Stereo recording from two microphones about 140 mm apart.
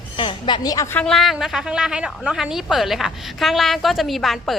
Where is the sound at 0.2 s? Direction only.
35° left (ahead or behind).